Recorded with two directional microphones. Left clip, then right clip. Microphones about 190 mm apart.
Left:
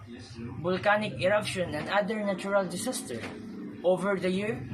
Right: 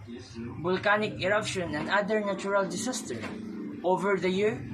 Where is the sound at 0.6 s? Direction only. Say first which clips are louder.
Even; 10° left (ahead or behind).